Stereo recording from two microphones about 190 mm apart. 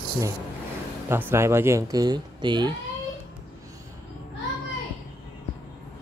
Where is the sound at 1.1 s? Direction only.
15° right (ahead or behind).